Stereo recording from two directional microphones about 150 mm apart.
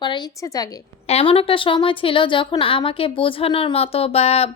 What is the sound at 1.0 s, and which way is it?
A woman's voice, 40° left (ahead or behind).